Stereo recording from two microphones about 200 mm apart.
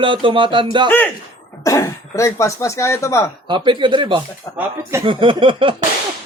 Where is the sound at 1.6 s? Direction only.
15° left (ahead or behind).